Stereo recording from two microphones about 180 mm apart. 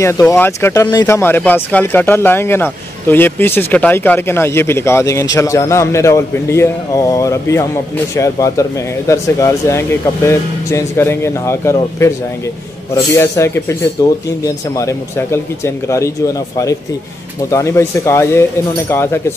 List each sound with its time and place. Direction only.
0.0 s speech: 15° left (ahead or behind)
17.5 s speech: 15° left (ahead or behind)